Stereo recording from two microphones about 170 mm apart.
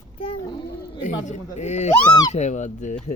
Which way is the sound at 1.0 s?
45° left (ahead or behind).